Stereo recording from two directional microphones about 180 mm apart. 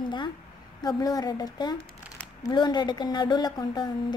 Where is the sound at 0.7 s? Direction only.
20° left (ahead or behind).